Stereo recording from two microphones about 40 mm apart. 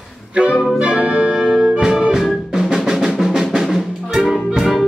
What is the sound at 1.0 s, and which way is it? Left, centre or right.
Music, right.